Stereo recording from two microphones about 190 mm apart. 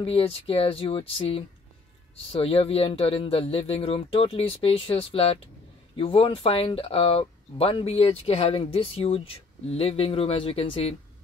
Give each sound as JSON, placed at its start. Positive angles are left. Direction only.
{"t": 0.0, "sound": "speech", "side_deg": 30}